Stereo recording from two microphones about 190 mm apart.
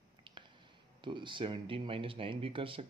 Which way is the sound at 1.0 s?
25° right (ahead or behind).